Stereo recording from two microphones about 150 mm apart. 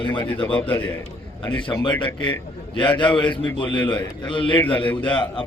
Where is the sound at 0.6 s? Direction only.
10° left (ahead or behind).